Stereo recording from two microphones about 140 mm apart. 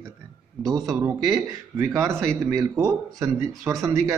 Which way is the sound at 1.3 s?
20° right (ahead or behind).